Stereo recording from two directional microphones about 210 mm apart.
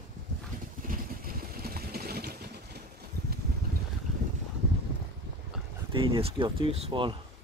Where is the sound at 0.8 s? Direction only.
45° right (ahead or behind).